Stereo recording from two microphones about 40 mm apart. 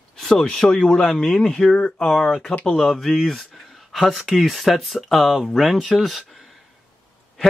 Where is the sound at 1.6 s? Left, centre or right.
Left.